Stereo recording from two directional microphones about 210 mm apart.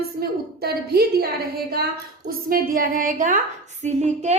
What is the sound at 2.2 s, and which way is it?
A woman's voice, 45° right (ahead or behind).